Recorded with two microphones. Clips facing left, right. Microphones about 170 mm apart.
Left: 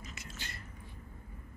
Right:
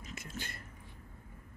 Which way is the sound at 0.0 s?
55° right (ahead or behind).